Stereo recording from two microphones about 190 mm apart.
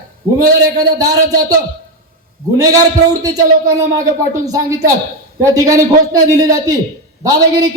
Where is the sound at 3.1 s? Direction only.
20° right (ahead or behind).